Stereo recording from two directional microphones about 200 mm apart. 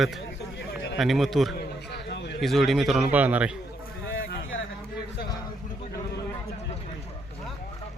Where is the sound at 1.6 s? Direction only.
55° left (ahead or behind).